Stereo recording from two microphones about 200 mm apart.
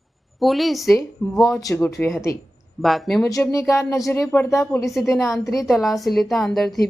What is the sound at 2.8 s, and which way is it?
Speech, centre (ahead or behind).